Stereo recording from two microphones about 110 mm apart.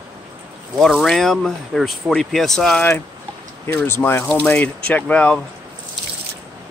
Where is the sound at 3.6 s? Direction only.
20° left (ahead or behind).